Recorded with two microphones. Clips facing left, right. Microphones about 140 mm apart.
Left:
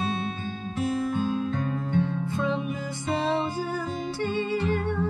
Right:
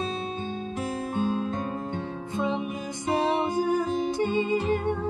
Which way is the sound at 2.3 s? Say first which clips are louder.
Right 2 dB; 20° right (ahead or behind).